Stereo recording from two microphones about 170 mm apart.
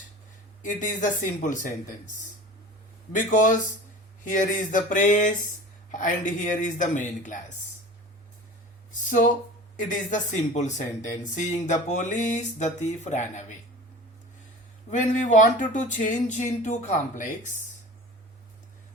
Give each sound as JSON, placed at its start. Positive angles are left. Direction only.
{"t": 0.6, "sound": "speech", "side_deg": 50}
{"t": 3.1, "sound": "speech", "side_deg": 50}
{"t": 8.9, "sound": "a sound", "side_deg": 50}
{"t": 9.7, "sound": "speech", "side_deg": 50}
{"t": 14.8, "sound": "speech", "side_deg": 45}